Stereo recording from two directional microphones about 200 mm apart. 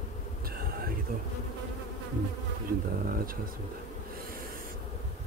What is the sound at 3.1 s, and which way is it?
Speech, 45° right (ahead or behind).